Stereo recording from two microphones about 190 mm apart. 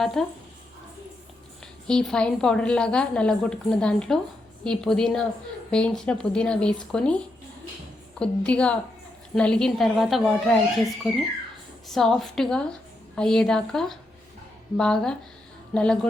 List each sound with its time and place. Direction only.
0.0 s a woman's voice: centre (ahead or behind)
1.9 s a woman's voice: 5° left (ahead or behind)
8.2 s a woman's voice: 5° left (ahead or behind)